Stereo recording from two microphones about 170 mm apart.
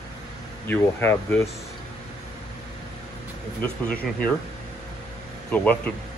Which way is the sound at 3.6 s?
10° left (ahead or behind).